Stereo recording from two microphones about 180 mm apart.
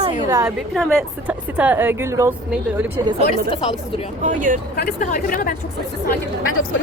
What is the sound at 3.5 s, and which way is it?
Speech, 30° left (ahead or behind).